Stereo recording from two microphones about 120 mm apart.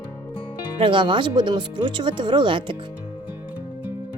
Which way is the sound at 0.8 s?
45° right (ahead or behind).